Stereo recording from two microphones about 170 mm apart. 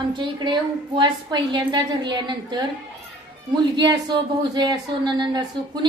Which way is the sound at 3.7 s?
25° right (ahead or behind).